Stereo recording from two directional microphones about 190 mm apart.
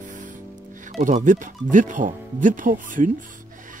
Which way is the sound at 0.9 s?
40° right (ahead or behind).